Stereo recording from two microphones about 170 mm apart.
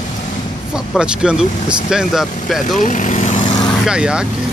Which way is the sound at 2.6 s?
50° left (ahead or behind).